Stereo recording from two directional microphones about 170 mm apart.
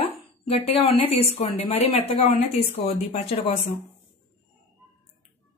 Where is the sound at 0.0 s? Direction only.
40° left (ahead or behind).